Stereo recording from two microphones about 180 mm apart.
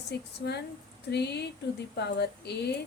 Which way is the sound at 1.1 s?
70° left (ahead or behind).